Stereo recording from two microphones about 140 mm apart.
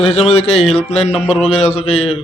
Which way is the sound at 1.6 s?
50° left (ahead or behind).